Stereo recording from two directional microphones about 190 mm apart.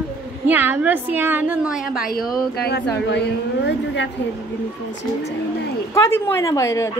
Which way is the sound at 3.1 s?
70° left (ahead or behind).